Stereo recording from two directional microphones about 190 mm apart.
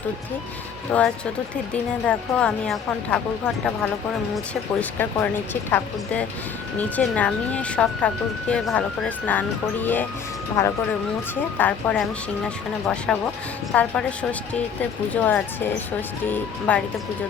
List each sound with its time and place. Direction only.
0.9 s a woman's voice: 5° left (ahead or behind)
4.8 s speech: 10° left (ahead or behind)
11.5 s speech: 5° left (ahead or behind)
13.1 s a woman's voice: centre (ahead or behind)